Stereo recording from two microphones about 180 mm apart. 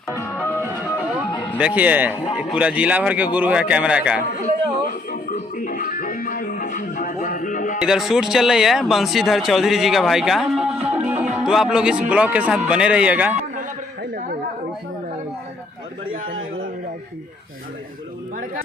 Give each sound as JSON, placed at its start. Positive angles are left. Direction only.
{"t": 0.1, "sound": "music", "side_deg": 15}
{"t": 0.6, "sound": "music", "side_deg": -10}
{"t": 1.5, "sound": "speech", "side_deg": -10}
{"t": 5.1, "sound": "music", "side_deg": 50}
{"t": 7.9, "sound": "speech", "side_deg": -5}
{"t": 11.0, "sound": "music", "side_deg": -10}
{"t": 11.4, "sound": "speech", "side_deg": -5}